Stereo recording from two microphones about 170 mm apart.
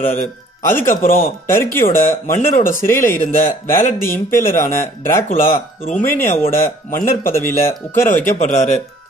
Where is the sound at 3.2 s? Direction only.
50° left (ahead or behind).